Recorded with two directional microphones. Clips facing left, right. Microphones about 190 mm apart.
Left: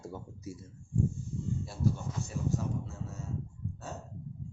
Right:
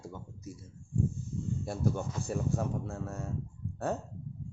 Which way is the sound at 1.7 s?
55° right (ahead or behind).